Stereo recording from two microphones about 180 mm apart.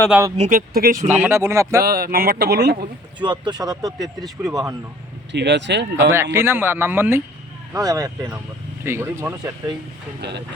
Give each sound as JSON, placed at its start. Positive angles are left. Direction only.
{"t": 0.3, "sound": "speech", "side_deg": -40}
{"t": 0.7, "sound": "speech", "side_deg": -55}
{"t": 1.0, "sound": "speech", "side_deg": -10}
{"t": 1.8, "sound": "speech", "side_deg": -55}
{"t": 3.2, "sound": "speech", "side_deg": -25}
{"t": 3.9, "sound": "speech", "side_deg": 0}
{"t": 5.3, "sound": "speech", "side_deg": -75}
{"t": 6.0, "sound": "speech", "side_deg": -15}
{"t": 10.2, "sound": "speech", "side_deg": -70}